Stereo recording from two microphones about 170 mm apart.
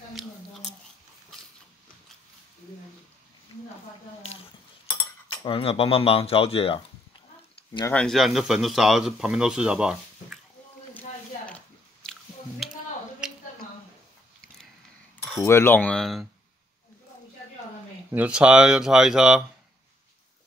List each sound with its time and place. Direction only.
5.3 s speech: 30° left (ahead or behind)
7.9 s speech: 5° left (ahead or behind)
11.4 s chewing: 5° left (ahead or behind)
13.2 s a sound: 5° right (ahead or behind)
15.2 s cutlery: 15° left (ahead or behind)
18.1 s speech: 5° right (ahead or behind)